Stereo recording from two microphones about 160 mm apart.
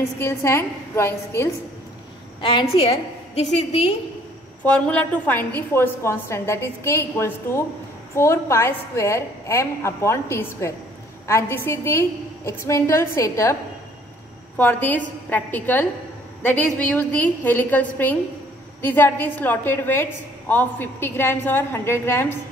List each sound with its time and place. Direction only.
0.2 s a woman's voice: 15° left (ahead or behind)
2.4 s a woman's voice: 35° left (ahead or behind)
4.6 s a woman's voice: 5° left (ahead or behind)
14.6 s a woman's voice: 10° left (ahead or behind)